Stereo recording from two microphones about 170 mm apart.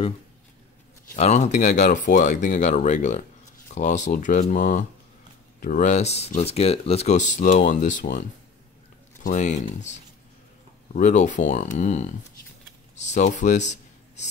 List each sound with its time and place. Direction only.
1.1 s speech: 45° left (ahead or behind)